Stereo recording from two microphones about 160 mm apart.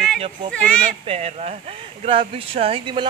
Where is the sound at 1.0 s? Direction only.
40° right (ahead or behind).